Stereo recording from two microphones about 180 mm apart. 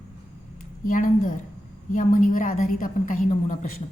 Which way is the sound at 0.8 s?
50° left (ahead or behind).